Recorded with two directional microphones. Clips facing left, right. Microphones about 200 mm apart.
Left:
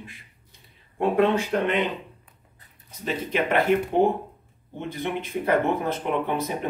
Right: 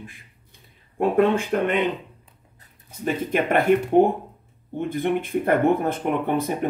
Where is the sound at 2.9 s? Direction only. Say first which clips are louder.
Right 3 dB; 50° right (ahead or behind).